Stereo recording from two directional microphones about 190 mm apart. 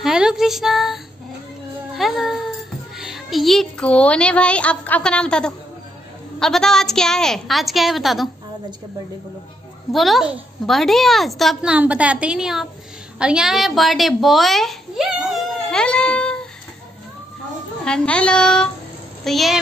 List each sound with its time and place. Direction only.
0.0 s a woman's voice: 5° right (ahead or behind)
9.9 s a woman's voice: centre (ahead or behind)
15.7 s a sound: 5° left (ahead or behind)
17.8 s a woman's voice: 5° left (ahead or behind)